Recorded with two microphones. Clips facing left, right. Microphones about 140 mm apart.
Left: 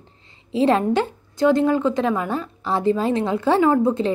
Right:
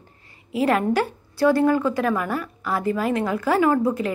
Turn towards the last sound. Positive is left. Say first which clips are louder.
# left 2 dB
turn(degrees=25)  # may be behind; listen again after turning